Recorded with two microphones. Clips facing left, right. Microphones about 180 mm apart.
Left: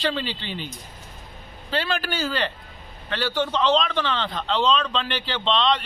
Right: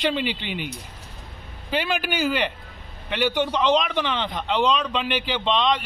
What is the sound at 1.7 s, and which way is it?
A man's voice, 15° right (ahead or behind).